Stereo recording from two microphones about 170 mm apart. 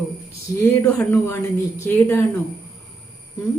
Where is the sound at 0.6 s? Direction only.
10° left (ahead or behind).